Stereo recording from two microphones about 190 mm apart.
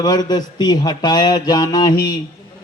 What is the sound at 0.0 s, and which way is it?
Speech, 20° left (ahead or behind).